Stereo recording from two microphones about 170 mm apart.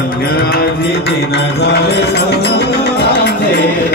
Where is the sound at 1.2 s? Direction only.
75° left (ahead or behind).